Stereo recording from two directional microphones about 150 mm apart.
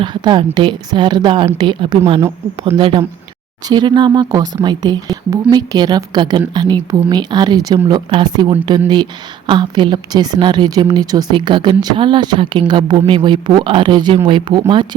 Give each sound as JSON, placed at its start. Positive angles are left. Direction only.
{"t": 0.0, "sound": "a woman's voice", "side_deg": -30}